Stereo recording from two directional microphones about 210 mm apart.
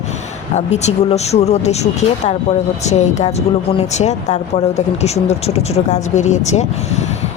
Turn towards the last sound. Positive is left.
turn(degrees=35)  # may be behind; listen again after turning